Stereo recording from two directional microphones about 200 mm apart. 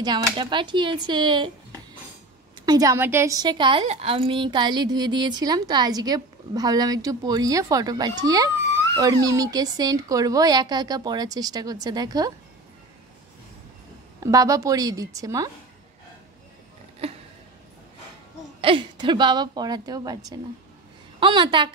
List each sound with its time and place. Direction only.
0.0 s a woman's voice: 25° right (ahead or behind)
2.6 s a woman's voice: 20° right (ahead or behind)
14.2 s a woman's voice: 15° right (ahead or behind)
17.0 s a sound: 30° right (ahead or behind)
18.6 s a woman's voice: 25° right (ahead or behind)